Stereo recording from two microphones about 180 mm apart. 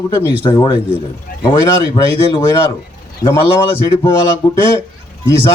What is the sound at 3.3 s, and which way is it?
Speech, 30° left (ahead or behind).